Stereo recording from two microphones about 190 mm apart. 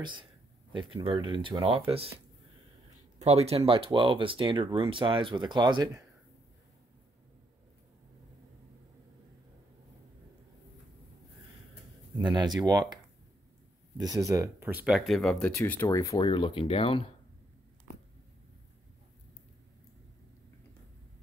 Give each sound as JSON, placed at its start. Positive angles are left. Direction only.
{"t": 0.7, "sound": "speech", "side_deg": -25}
{"t": 3.2, "sound": "speech", "side_deg": -35}
{"t": 12.2, "sound": "speech", "side_deg": -20}
{"t": 16.1, "sound": "speech", "side_deg": 25}